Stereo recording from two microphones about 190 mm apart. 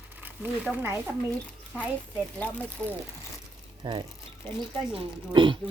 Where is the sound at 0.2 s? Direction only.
10° right (ahead or behind).